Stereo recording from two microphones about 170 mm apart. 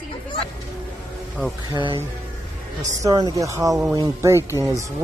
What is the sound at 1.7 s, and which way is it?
Speech, 30° right (ahead or behind).